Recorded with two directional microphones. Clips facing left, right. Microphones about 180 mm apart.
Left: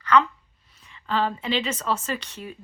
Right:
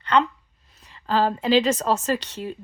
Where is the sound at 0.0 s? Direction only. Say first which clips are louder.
Even; 30° right (ahead or behind).